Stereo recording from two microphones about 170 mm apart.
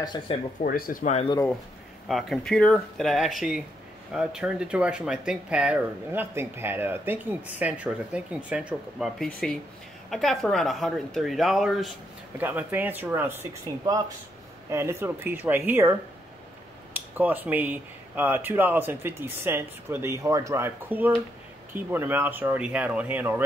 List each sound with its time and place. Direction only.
0.0 s speech: 25° left (ahead or behind)
0.6 s speech: 60° left (ahead or behind)
2.0 s a woman's voice: centre (ahead or behind)